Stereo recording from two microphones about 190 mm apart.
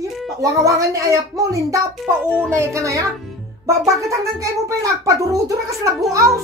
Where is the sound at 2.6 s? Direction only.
15° right (ahead or behind).